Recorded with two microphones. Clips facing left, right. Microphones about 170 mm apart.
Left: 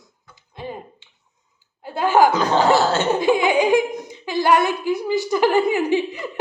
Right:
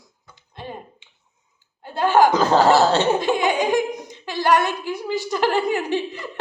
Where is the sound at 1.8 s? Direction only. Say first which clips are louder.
Even; 5° left (ahead or behind).